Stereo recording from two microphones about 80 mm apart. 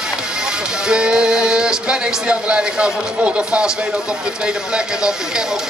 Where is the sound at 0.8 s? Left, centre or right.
Centre.